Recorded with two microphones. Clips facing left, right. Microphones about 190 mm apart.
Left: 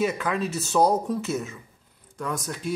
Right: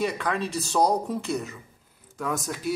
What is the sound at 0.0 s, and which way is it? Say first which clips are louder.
A man's voice: left 2 dB; 5° left (ahead or behind).